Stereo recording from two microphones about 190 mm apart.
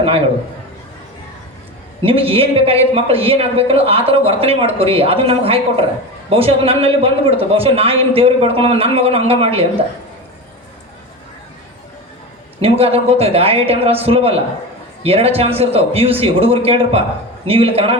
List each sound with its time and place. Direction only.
2.0 s a man's voice: 30° right (ahead or behind)
12.6 s a man's voice: 30° right (ahead or behind)